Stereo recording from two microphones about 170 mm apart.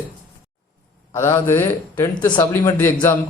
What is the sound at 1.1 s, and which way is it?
A man's voice, 15° left (ahead or behind).